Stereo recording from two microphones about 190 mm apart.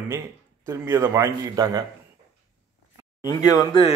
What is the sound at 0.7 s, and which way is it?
A man's voice, 15° right (ahead or behind).